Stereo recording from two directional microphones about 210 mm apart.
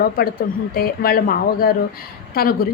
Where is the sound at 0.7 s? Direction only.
45° left (ahead or behind).